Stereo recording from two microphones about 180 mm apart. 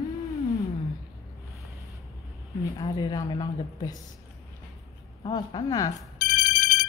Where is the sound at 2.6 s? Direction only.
20° left (ahead or behind).